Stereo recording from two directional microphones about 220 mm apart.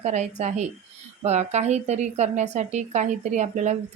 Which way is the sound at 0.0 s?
30° right (ahead or behind).